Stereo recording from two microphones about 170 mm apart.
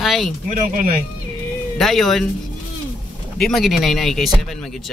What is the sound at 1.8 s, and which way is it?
Speech, centre (ahead or behind).